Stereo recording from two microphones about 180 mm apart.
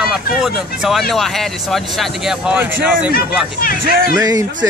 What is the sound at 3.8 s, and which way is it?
Speech, 55° right (ahead or behind).